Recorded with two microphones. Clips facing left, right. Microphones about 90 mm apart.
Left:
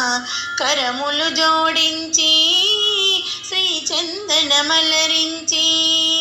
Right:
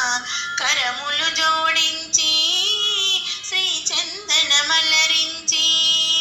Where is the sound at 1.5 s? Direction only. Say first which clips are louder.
Left 3 dB; 40° left (ahead or behind).